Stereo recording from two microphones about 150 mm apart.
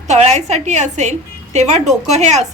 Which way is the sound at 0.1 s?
50° right (ahead or behind).